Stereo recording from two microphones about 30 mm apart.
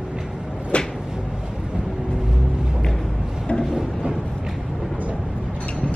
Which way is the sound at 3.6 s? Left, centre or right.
Centre.